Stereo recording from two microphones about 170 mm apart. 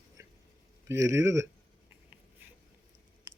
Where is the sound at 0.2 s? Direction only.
15° right (ahead or behind).